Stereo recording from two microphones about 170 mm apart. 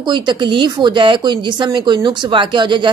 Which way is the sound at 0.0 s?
25° right (ahead or behind).